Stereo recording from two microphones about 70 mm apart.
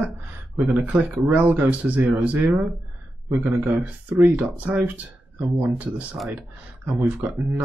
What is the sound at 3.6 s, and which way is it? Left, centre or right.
Speech, right.